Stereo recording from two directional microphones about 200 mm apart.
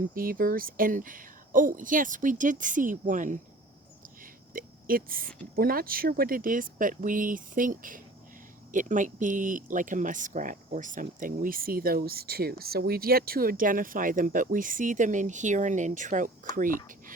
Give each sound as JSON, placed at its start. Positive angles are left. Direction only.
{"t": 0.1, "sound": "speech", "side_deg": -45}
{"t": 4.2, "sound": "a sound", "side_deg": -45}
{"t": 5.5, "sound": "speech", "side_deg": -45}